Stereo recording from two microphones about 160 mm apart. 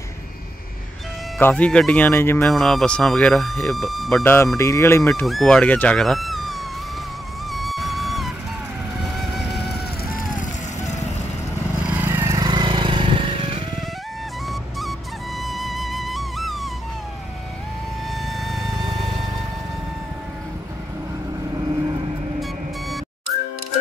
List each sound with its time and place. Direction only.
1.4 s speech: 5° left (ahead or behind)
2.4 s speech: centre (ahead or behind)
4.2 s speech: 15° left (ahead or behind)
5.2 s speech: centre (ahead or behind)
7.5 s music: centre (ahead or behind)
10.3 s vehicle: 50° left (ahead or behind)
11.9 s vehicle: 10° right (ahead or behind)
12.4 s vehicle: 30° right (ahead or behind)
14.5 s music: centre (ahead or behind)
18.1 s music: centre (ahead or behind)